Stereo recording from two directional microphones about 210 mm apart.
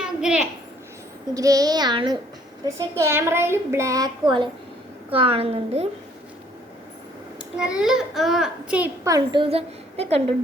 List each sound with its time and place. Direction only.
0.0 s a sound: 5° right (ahead or behind)
1.3 s a child's voice: 15° right (ahead or behind)
7.6 s a child's voice: 5° right (ahead or behind); by 10.3 s 30° right (ahead or behind)